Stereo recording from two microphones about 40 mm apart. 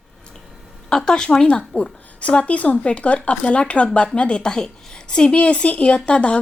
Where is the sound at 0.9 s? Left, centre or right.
Centre.